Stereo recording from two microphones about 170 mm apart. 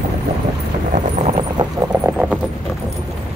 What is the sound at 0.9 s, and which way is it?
Clip-clop, 45° right (ahead or behind).